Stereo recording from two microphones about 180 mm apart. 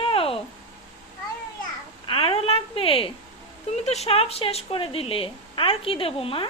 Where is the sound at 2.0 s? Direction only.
30° left (ahead or behind).